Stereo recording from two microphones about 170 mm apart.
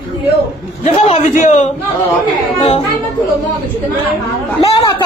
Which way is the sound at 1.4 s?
45° left (ahead or behind).